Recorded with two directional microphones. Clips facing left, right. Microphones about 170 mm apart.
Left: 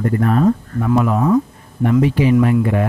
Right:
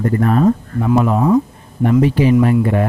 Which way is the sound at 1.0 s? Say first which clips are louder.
Right 1 dB; 25° right (ahead or behind).